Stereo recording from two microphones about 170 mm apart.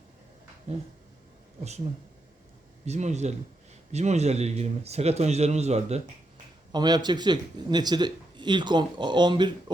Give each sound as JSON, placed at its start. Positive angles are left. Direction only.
{"t": 0.7, "sound": "speech", "side_deg": -40}
{"t": 2.8, "sound": "speech", "side_deg": -40}
{"t": 6.7, "sound": "speech", "side_deg": -25}